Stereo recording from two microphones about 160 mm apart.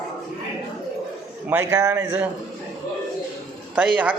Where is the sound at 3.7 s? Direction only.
10° right (ahead or behind).